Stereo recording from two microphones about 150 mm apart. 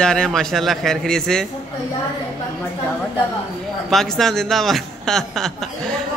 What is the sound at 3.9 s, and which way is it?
Speech, centre (ahead or behind).